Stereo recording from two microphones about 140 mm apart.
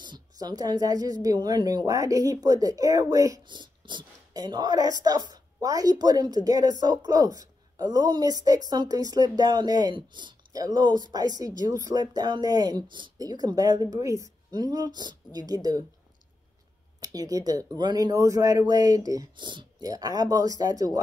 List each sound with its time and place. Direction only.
0.0 s speech: 30° right (ahead or behind)
17.0 s speech: 25° right (ahead or behind)